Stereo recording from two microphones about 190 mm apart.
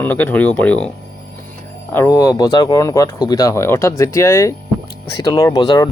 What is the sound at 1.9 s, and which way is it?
Speech, 15° left (ahead or behind).